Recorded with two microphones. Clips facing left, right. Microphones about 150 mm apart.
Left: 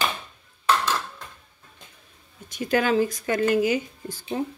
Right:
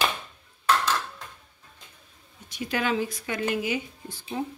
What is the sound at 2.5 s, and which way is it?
Speech, 45° left (ahead or behind).